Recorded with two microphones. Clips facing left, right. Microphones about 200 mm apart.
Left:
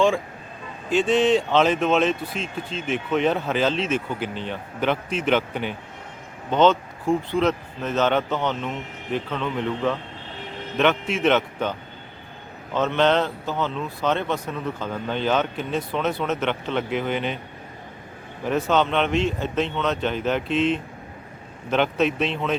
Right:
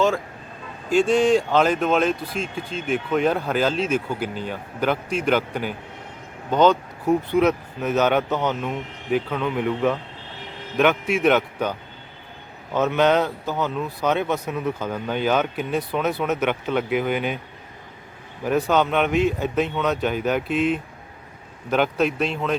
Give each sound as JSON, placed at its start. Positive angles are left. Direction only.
{"t": 0.9, "sound": "speech", "side_deg": -10}
{"t": 7.0, "sound": "speech", "side_deg": -20}
{"t": 8.4, "sound": "speech", "side_deg": -5}
{"t": 12.7, "sound": "speech", "side_deg": -10}
{"t": 18.4, "sound": "speech", "side_deg": -5}